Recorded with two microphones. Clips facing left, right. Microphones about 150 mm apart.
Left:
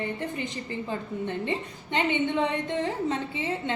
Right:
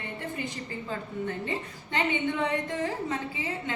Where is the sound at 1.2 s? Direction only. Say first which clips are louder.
Left 3 dB; 25° left (ahead or behind).